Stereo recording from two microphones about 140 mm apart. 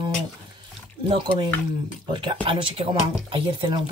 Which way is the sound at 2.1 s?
35° right (ahead or behind).